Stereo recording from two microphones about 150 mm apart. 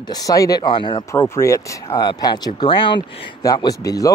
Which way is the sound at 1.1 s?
20° left (ahead or behind).